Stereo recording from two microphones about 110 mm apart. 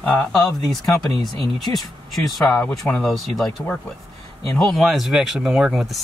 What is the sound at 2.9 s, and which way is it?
Speech, centre (ahead or behind).